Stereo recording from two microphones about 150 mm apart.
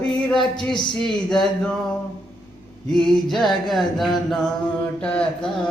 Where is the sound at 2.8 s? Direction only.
5° left (ahead or behind).